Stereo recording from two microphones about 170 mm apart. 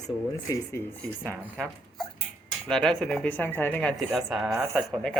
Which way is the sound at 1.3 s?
5° left (ahead or behind).